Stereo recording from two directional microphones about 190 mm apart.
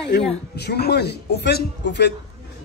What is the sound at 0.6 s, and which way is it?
A man's voice, 60° left (ahead or behind).